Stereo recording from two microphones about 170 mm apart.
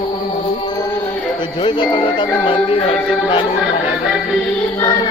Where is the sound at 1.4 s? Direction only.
30° left (ahead or behind).